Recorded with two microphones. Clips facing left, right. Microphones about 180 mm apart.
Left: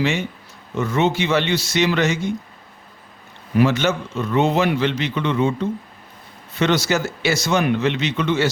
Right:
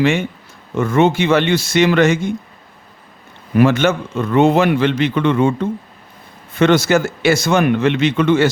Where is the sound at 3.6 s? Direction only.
55° right (ahead or behind).